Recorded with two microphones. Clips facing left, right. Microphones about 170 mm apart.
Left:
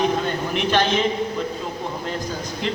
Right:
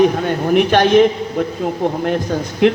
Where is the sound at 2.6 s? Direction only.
65° right (ahead or behind).